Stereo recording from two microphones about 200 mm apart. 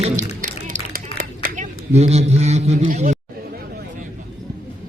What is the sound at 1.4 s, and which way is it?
A man's voice, 40° right (ahead or behind).